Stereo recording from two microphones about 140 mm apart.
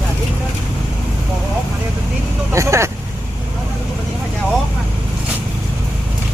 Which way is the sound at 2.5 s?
20° right (ahead or behind).